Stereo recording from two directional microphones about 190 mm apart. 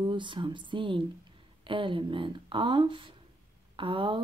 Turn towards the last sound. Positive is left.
turn(degrees=-25)  # may be behind; listen again after turning